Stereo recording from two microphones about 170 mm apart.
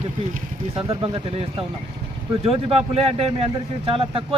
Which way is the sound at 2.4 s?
35° right (ahead or behind).